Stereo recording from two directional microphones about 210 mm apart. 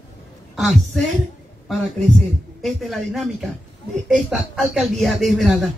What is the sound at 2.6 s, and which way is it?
A man's voice, centre (ahead or behind).